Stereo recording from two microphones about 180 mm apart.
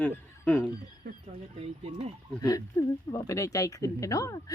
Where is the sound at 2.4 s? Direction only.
20° left (ahead or behind).